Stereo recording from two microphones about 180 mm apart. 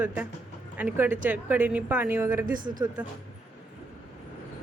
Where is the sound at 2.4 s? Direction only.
50° right (ahead or behind).